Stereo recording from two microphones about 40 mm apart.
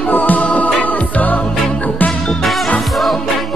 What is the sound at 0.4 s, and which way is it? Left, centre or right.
Music, left.